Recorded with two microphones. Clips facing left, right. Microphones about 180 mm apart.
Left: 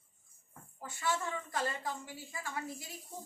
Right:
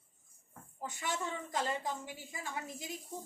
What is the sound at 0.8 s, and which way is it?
A woman's voice, 20° right (ahead or behind).